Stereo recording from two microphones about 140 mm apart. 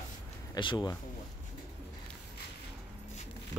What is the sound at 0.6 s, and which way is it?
Speech, 35° left (ahead or behind).